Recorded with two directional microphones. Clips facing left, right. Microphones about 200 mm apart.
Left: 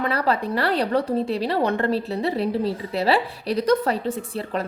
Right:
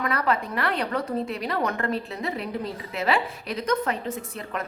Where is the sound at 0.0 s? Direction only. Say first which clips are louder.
Left 3 dB; 30° left (ahead or behind).